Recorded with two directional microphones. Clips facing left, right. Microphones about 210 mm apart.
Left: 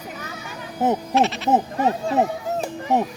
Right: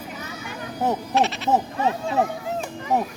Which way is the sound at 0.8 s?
20° left (ahead or behind).